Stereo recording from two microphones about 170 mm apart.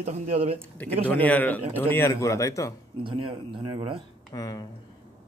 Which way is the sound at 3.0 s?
30° right (ahead or behind).